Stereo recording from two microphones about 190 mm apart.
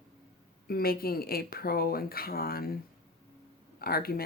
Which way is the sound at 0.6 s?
50° left (ahead or behind).